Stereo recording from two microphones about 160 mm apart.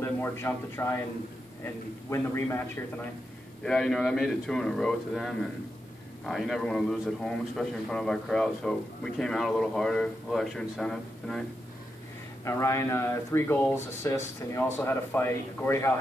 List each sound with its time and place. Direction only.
0.0 s a man's voice: 15° left (ahead or behind)
12.4 s speech: 15° left (ahead or behind)